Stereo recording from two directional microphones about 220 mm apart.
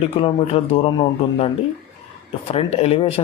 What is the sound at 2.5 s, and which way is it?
Speech, 25° left (ahead or behind).